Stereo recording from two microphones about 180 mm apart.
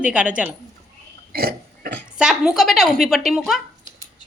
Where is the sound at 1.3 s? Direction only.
60° right (ahead or behind).